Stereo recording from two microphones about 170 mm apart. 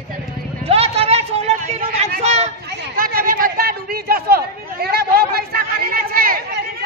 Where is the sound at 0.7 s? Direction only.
35° right (ahead or behind).